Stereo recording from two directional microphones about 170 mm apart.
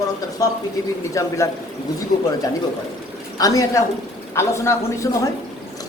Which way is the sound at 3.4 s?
20° left (ahead or behind).